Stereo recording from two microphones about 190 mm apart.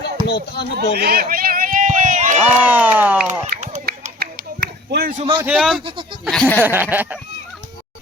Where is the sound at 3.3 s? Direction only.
40° right (ahead or behind).